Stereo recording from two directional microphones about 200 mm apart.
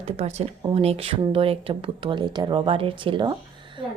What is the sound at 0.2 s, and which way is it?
A woman's voice, 30° right (ahead or behind).